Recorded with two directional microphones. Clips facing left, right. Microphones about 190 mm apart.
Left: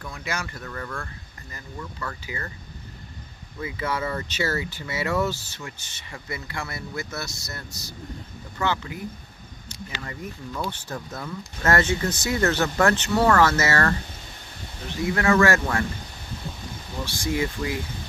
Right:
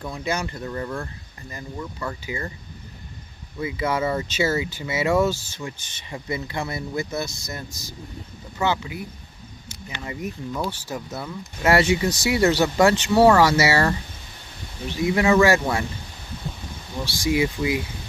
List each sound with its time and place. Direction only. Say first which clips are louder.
0.0 s speech: right 5 dB; 20° right (ahead or behind)
3.6 s speech: right 4 dB; 20° right (ahead or behind)
5.7 s speech: right 5 dB; 25° right (ahead or behind)
8.5 s speech: right 3 dB; 10° right (ahead or behind)
10.0 s speech: right 8 dB; 20° right (ahead or behind)
15.0 s speech: right 3 dB; 15° right (ahead or behind)
17.0 s speech: right 4 dB; 10° right (ahead or behind)